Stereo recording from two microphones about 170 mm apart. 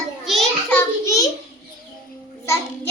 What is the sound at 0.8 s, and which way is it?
Speech, 20° left (ahead or behind).